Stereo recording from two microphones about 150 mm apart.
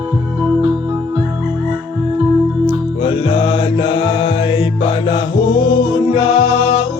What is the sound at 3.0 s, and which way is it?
Music, 35° left (ahead or behind).